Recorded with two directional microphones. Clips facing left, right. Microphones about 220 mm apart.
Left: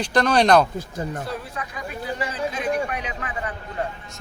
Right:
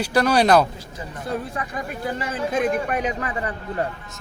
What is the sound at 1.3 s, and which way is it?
Speech, 50° right (ahead or behind).